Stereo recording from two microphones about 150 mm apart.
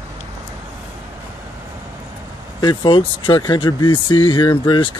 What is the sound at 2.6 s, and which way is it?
Speech, 30° left (ahead or behind).